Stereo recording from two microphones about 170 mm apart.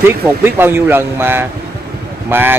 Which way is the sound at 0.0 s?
15° right (ahead or behind).